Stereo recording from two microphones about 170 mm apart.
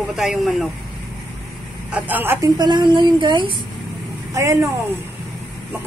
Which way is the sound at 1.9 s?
10° right (ahead or behind).